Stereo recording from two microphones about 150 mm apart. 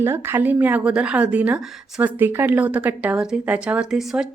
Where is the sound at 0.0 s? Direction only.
15° right (ahead or behind).